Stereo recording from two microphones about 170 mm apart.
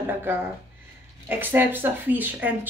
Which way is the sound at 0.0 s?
10° right (ahead or behind).